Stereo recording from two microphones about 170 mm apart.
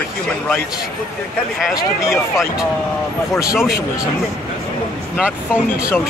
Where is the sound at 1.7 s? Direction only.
20° left (ahead or behind).